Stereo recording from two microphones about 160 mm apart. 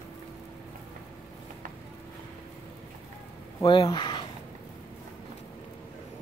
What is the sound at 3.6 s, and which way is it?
Mantra, 30° left (ahead or behind).